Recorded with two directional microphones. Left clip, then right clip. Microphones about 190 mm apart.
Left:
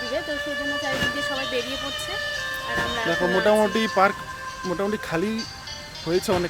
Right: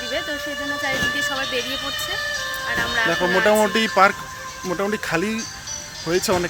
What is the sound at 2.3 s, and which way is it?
Music, 30° left (ahead or behind).